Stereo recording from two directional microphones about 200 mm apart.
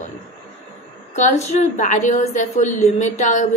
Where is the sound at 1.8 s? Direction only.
40° left (ahead or behind).